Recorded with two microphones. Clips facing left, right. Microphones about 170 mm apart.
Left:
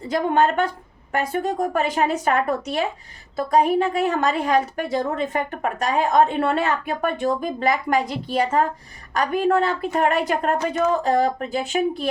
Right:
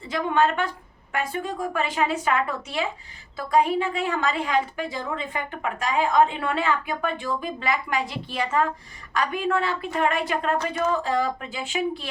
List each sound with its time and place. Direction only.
0.0 s a woman's voice: 45° left (ahead or behind)